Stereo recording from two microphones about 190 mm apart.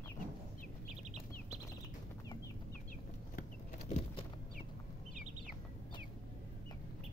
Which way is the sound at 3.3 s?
35° left (ahead or behind).